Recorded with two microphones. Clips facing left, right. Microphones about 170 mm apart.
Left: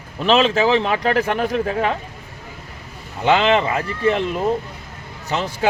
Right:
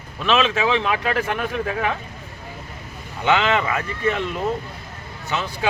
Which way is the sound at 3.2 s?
35° left (ahead or behind).